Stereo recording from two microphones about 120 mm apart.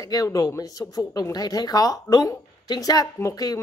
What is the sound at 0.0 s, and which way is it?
Speech, 30° left (ahead or behind).